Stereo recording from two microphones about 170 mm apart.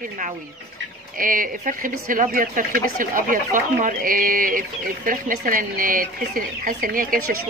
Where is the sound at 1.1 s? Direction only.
55° right (ahead or behind).